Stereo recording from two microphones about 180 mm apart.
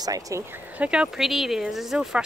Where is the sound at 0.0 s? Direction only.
20° right (ahead or behind).